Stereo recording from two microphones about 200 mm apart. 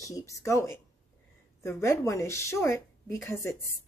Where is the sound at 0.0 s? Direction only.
15° left (ahead or behind).